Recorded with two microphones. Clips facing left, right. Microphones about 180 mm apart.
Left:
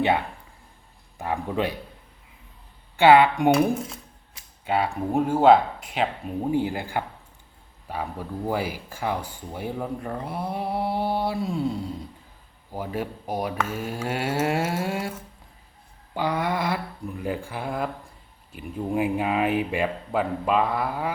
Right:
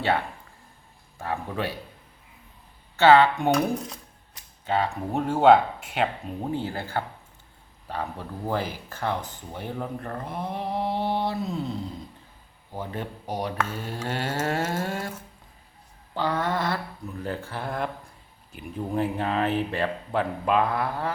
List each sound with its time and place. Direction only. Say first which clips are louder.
1.2 s speech: left 3 dB; 15° left (ahead or behind)
2.9 s speech: left 1 dB; 15° left (ahead or behind)
4.6 s speech: left 1 dB; 10° left (ahead or behind)
6.5 s speech: left 4 dB; 15° left (ahead or behind)
16.1 s speech: left 1 dB; 10° left (ahead or behind)
20.4 s speech: right 1 dB; centre (ahead or behind)